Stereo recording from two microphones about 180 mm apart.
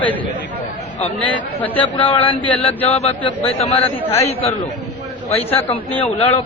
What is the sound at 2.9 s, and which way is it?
Speech, 35° left (ahead or behind).